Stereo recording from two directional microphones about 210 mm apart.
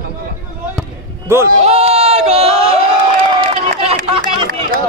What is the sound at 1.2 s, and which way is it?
Speech, 10° right (ahead or behind).